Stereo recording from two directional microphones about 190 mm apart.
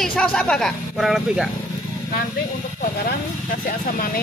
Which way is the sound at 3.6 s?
50° left (ahead or behind).